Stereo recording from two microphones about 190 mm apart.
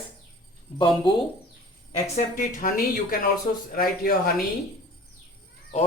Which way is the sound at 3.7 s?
50° left (ahead or behind).